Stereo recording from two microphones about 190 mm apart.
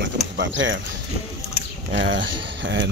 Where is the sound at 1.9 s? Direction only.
70° right (ahead or behind).